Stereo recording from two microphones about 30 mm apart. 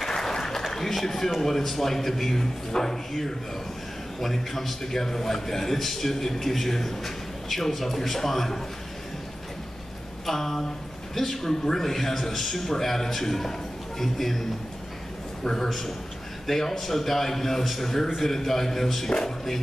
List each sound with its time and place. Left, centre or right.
0.1 s applause: centre
0.7 s a man's voice: centre
10.2 s a man's voice: centre
15.4 s a man's voice: centre
19.0 s speech: left